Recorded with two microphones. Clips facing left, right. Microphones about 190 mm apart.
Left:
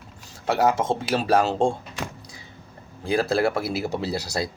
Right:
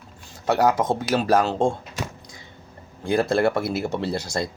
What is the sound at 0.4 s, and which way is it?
Speech, 5° left (ahead or behind).